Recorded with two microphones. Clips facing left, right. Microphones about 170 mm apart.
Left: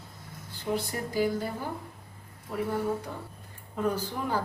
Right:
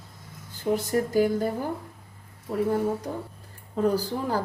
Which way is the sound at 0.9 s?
45° right (ahead or behind).